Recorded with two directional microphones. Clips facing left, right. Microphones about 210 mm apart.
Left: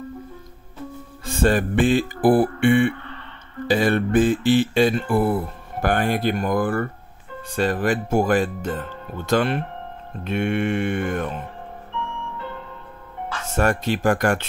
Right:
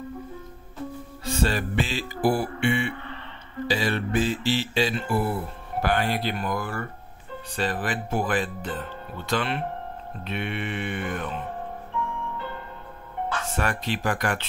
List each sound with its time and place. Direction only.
1.2 s music: 50° left (ahead or behind)
3.6 s speech: 50° left (ahead or behind)
13.6 s speech: 45° left (ahead or behind)